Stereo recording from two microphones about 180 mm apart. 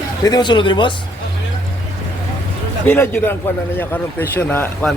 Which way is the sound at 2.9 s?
10° left (ahead or behind).